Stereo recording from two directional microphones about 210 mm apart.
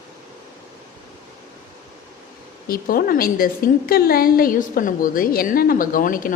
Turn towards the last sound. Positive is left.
turn(degrees=40)  # may be behind; listen again after turning